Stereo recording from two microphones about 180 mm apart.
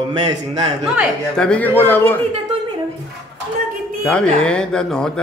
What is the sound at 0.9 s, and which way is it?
Speech, centre (ahead or behind).